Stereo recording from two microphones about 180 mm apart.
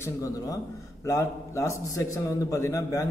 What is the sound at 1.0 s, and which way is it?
A man's voice, 15° left (ahead or behind).